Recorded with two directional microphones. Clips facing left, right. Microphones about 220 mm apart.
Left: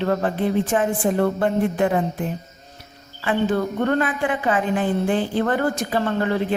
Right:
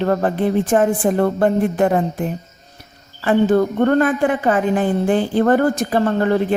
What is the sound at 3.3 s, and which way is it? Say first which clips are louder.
A woman's voice: right 6 dB; 45° right (ahead or behind).